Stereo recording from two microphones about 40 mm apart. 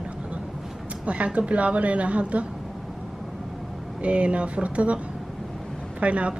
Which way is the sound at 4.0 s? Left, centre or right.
Right.